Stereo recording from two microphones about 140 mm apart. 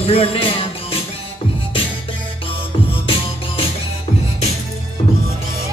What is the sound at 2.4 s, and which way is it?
Music, 40° left (ahead or behind).